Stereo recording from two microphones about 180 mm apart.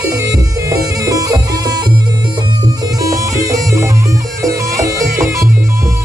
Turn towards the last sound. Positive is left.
turn(degrees=-15)  # may be behind; listen again after turning